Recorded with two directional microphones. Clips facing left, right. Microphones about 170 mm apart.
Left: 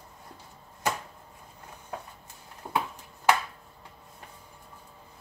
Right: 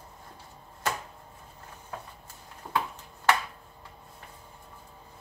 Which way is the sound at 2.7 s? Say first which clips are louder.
Even; 20° left (ahead or behind).